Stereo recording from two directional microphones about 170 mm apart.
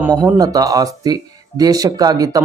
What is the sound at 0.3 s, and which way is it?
Speech, 20° right (ahead or behind).